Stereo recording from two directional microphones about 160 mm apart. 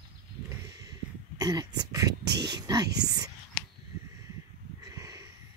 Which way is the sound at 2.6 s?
25° right (ahead or behind).